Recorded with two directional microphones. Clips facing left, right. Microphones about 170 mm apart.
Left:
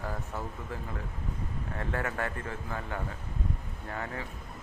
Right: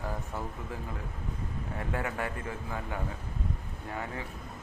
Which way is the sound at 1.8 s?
15° right (ahead or behind).